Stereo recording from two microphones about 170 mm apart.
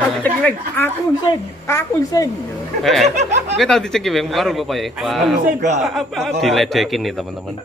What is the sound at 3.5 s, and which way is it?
A man's voice, centre (ahead or behind).